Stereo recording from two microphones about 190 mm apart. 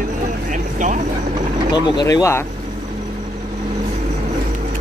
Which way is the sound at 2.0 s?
15° left (ahead or behind).